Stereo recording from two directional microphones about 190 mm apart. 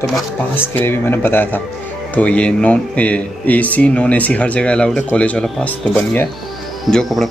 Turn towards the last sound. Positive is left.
turn(degrees=0)  # may be behind; listen again after turning